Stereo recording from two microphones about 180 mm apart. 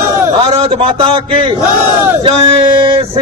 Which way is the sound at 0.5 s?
35° right (ahead or behind).